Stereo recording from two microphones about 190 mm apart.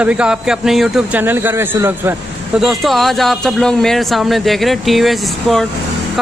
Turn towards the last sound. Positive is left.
turn(degrees=0)  # may be behind; listen again after turning